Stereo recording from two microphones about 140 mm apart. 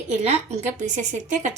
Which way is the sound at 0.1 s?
50° right (ahead or behind).